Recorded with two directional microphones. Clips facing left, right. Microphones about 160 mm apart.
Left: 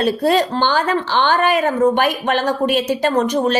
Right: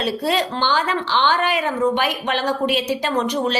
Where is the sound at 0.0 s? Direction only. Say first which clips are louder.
Left 5 dB; 45° left (ahead or behind).